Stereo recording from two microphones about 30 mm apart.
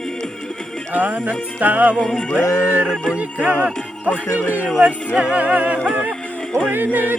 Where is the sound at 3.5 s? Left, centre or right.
Right.